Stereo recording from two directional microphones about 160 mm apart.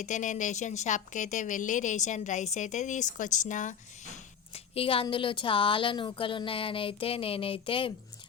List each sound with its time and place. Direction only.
0.0 s a woman's voice: 50° left (ahead or behind)
4.5 s a woman's voice: 40° left (ahead or behind)